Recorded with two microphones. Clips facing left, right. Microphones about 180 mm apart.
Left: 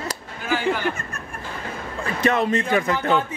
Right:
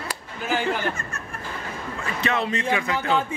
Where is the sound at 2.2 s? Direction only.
45° left (ahead or behind).